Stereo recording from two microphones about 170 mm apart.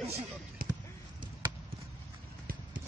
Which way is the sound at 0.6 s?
60° right (ahead or behind).